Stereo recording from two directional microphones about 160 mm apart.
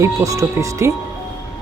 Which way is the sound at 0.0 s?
20° right (ahead or behind).